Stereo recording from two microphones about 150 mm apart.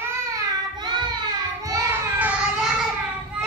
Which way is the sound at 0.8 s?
30° right (ahead or behind).